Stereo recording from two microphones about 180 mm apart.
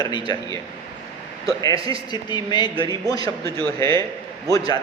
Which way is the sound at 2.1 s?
25° left (ahead or behind).